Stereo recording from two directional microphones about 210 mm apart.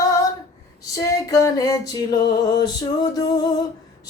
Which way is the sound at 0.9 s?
15° left (ahead or behind).